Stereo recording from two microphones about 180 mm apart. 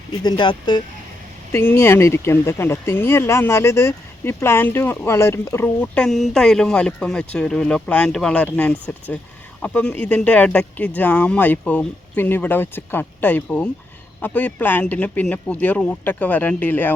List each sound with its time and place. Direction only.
0.2 s speech: 25° left (ahead or behind)
1.5 s speech: 15° left (ahead or behind)